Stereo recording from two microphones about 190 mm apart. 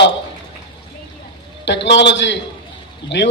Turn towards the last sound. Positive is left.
turn(degrees=70)  # may be behind; listen again after turning